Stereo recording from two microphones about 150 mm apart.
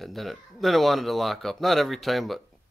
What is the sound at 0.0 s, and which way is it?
Speech, centre (ahead or behind).